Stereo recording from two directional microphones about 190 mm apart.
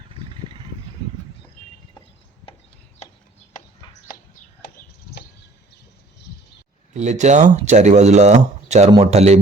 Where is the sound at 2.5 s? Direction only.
30° left (ahead or behind).